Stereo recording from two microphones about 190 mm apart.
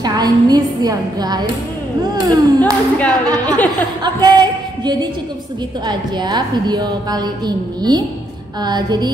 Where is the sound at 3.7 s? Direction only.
20° right (ahead or behind).